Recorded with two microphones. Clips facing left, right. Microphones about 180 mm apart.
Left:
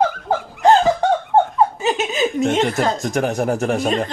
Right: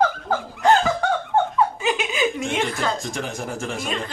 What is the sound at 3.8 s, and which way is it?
Speech, 40° left (ahead or behind).